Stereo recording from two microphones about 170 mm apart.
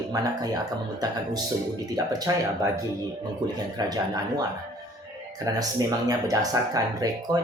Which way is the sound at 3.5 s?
25° right (ahead or behind).